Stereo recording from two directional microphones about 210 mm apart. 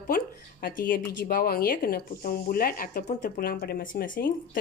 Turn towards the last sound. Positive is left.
turn(degrees=40)  # may be behind; listen again after turning